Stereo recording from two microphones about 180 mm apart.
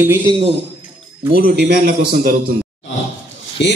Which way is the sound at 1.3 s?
60° right (ahead or behind).